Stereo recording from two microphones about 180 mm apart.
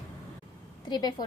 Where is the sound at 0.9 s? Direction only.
25° left (ahead or behind).